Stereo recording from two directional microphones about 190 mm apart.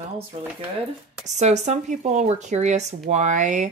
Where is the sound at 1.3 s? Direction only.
35° right (ahead or behind).